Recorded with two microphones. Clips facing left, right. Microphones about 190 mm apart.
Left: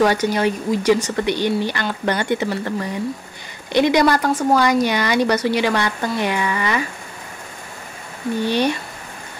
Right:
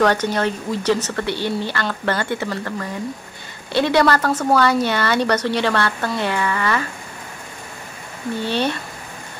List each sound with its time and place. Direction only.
0.0 s a woman's voice: 10° left (ahead or behind)
8.4 s a woman's voice: 15° left (ahead or behind)